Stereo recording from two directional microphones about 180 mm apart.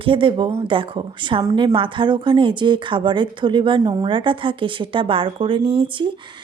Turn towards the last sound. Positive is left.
turn(degrees=-25)  # may be behind; listen again after turning